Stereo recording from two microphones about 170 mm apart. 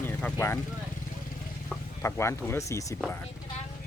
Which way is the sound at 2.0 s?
15° left (ahead or behind).